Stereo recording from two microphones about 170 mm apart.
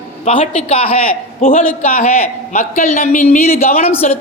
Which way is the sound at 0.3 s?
35° left (ahead or behind).